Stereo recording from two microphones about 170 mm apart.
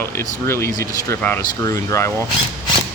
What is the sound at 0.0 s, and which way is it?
Speech, 15° left (ahead or behind).